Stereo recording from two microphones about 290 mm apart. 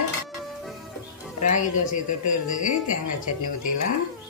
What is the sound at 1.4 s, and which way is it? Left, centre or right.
Speech, left.